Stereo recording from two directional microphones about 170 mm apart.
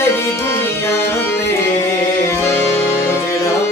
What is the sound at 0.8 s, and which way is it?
Music, 15° left (ahead or behind).